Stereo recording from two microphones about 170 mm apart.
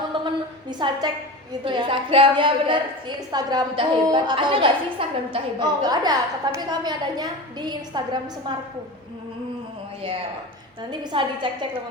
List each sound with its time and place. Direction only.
0.7 s a woman's voice: 25° right (ahead or behind)
11.1 s a woman's voice: 30° right (ahead or behind)